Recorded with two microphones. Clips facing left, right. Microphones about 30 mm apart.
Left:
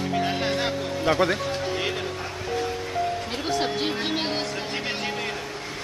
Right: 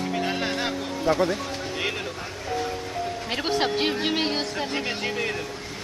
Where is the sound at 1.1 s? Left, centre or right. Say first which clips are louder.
Even; left.